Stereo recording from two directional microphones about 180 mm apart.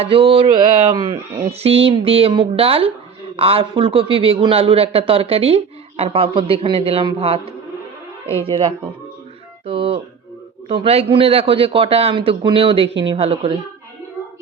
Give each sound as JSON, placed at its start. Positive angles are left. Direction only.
{"t": 0.0, "sound": "a man's voice", "side_deg": -30}
{"t": 9.6, "sound": "music", "side_deg": -30}
{"t": 10.7, "sound": "a man's voice", "side_deg": -35}